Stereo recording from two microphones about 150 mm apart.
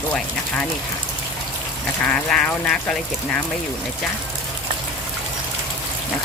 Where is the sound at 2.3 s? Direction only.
5° left (ahead or behind).